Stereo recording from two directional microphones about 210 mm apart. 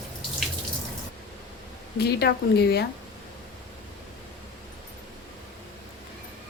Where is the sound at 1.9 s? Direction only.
50° left (ahead or behind).